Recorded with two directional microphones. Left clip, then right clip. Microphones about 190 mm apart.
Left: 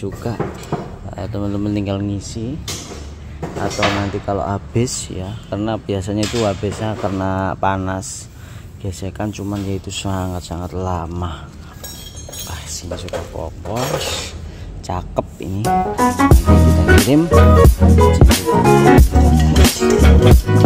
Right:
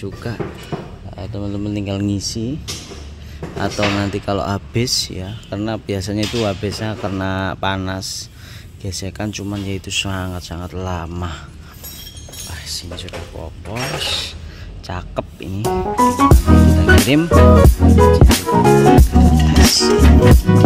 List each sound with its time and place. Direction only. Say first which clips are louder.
0.0 s speech: left 3 dB; centre (ahead or behind)
2.0 s speech: right 4 dB; 35° right (ahead or behind)
3.7 s speech: left 1 dB; 25° right (ahead or behind)
4.7 s speech: right 2 dB; centre (ahead or behind)
8.0 s speech: right 4 dB; 20° left (ahead or behind)
8.8 s speech: left 1 dB; 5° right (ahead or behind)
12.4 s speech: right 1 dB; 5° left (ahead or behind)
14.9 s speech: left 4 dB; 10° left (ahead or behind)